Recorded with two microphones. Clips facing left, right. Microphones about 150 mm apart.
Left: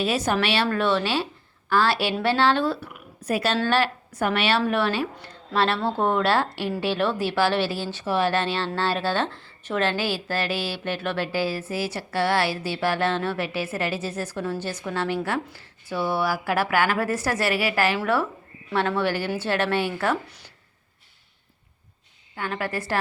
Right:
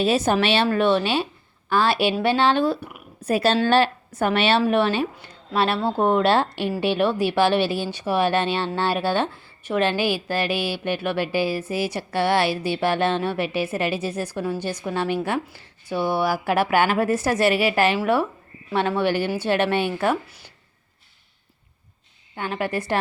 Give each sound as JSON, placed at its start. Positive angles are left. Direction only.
{"t": 0.0, "sound": "a woman's voice", "side_deg": -25}
{"t": 3.2, "sound": "a woman's voice", "side_deg": -30}
{"t": 5.1, "sound": "a woman's voice", "side_deg": -10}
{"t": 22.4, "sound": "a woman's voice", "side_deg": -20}